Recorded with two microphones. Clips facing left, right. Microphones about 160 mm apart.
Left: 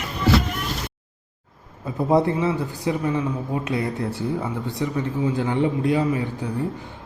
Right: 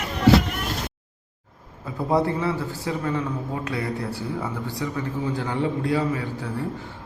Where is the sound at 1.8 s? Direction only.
20° left (ahead or behind).